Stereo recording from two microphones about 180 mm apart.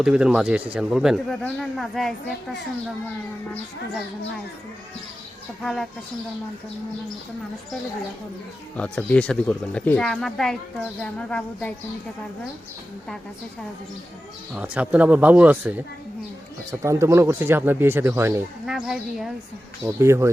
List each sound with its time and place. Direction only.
0.0 s speech: 5° right (ahead or behind)
5.6 s speech: centre (ahead or behind)
8.7 s speech: 5° left (ahead or behind)
14.5 s speech: 10° right (ahead or behind)
16.8 s speech: 15° right (ahead or behind)
18.6 s speech: centre (ahead or behind)
19.8 s speech: 15° right (ahead or behind)